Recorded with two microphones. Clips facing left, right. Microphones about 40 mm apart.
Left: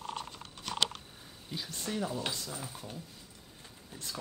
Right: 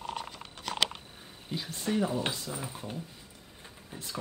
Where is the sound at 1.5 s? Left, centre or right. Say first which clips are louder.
Right 6 dB; right.